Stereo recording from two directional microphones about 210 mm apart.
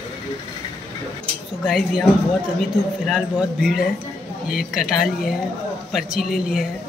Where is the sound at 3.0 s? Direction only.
5° right (ahead or behind).